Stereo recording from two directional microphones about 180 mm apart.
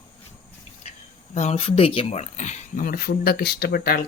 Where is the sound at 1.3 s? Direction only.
40° left (ahead or behind).